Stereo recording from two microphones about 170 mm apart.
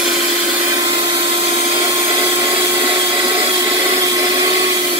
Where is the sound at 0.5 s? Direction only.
20° right (ahead or behind).